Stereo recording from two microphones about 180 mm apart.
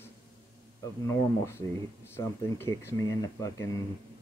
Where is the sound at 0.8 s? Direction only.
15° left (ahead or behind).